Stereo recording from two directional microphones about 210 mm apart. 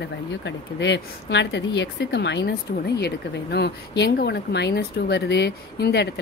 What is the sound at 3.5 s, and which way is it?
Speech, 50° left (ahead or behind).